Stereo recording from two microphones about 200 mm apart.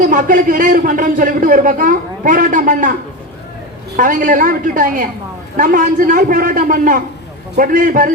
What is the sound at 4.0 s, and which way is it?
A man's voice, 40° right (ahead or behind).